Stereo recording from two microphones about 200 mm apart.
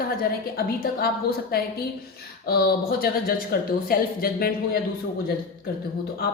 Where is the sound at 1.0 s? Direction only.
50° left (ahead or behind).